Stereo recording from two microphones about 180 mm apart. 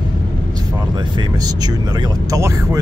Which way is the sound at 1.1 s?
25° right (ahead or behind).